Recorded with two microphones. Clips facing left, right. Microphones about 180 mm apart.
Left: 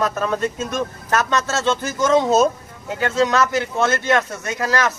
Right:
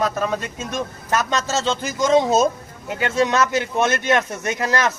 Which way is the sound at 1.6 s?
15° right (ahead or behind).